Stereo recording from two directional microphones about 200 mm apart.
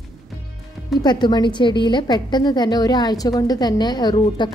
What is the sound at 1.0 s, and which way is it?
A woman's voice, 20° left (ahead or behind).